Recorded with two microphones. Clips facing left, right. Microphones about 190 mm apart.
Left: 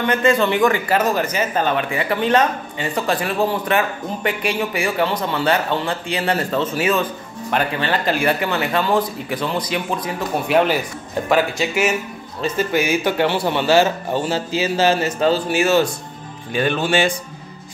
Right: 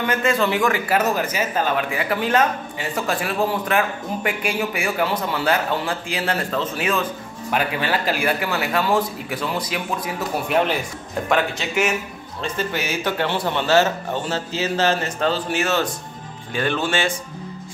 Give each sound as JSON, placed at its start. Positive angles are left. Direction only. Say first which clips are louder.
{"t": 0.0, "sound": "a man's voice", "louder": "left 3 dB", "side_deg": 0}
{"t": 7.5, "sound": "a man's voice", "louder": "left 2 dB", "side_deg": -10}